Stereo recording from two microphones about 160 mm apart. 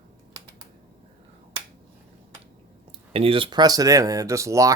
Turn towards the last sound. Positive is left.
turn(degrees=-20)  # may be behind; listen again after turning